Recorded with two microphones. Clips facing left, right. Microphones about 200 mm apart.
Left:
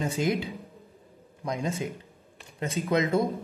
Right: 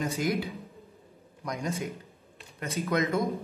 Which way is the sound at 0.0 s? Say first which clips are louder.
Left 2 dB; 25° left (ahead or behind).